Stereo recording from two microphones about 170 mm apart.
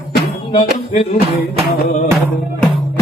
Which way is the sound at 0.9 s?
40° left (ahead or behind).